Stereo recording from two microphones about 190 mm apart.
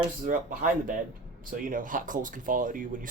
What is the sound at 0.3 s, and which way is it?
Speech, 45° right (ahead or behind).